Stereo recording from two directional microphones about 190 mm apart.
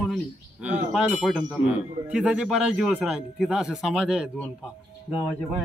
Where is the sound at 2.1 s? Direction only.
5° right (ahead or behind).